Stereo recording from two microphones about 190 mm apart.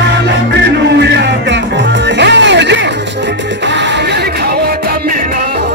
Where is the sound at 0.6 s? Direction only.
65° right (ahead or behind).